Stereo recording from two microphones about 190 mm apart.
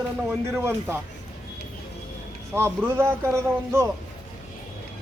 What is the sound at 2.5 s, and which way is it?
A man's voice, 15° right (ahead or behind).